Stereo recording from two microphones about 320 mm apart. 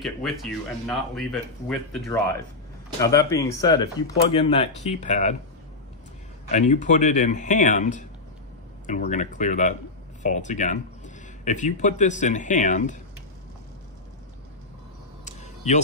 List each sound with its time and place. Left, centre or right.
0.0 s speech: centre; by 5.4 s left
6.5 s speech: left
15.2 s a sound: left